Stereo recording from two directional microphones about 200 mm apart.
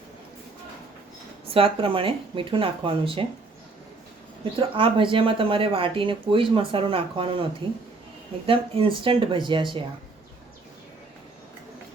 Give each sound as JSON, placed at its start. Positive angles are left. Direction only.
{"t": 1.5, "sound": "speech", "side_deg": -25}
{"t": 4.5, "sound": "speech", "side_deg": -25}